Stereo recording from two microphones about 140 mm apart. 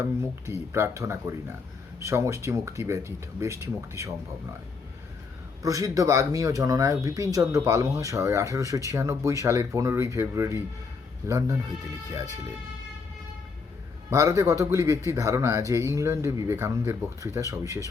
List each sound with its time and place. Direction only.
0.0 s speech: 20° right (ahead or behind)
5.6 s speech: 25° right (ahead or behind)
14.1 s speech: 20° right (ahead or behind)